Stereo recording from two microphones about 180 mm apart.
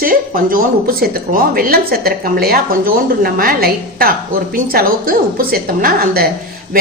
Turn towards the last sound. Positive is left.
turn(degrees=-55)  # may be behind; listen again after turning